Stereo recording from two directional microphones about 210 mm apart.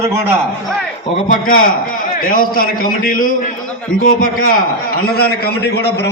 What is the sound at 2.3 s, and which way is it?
A man's voice, 45° left (ahead or behind).